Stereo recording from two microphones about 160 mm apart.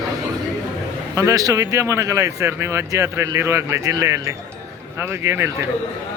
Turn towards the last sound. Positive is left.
turn(degrees=-15)  # may be behind; listen again after turning